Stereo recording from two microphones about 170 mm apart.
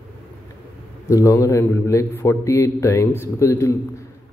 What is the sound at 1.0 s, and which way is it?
A man's voice, 15° left (ahead or behind).